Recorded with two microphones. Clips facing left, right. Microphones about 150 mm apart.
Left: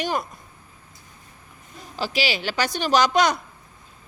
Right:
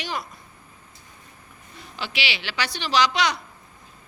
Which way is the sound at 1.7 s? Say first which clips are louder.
Left 6 dB; 40° left (ahead or behind).